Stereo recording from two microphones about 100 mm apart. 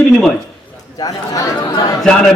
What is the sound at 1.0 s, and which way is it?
Speech, 40° left (ahead or behind).